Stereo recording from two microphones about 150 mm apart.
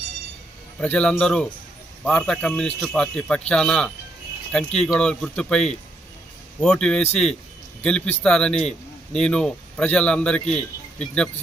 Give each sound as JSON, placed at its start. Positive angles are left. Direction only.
{"t": 0.8, "sound": "a man's voice", "side_deg": 5}